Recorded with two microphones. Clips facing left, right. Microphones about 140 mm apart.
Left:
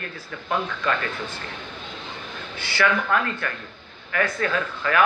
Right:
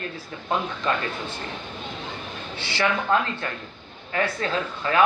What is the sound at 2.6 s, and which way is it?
Speech, 25° right (ahead or behind).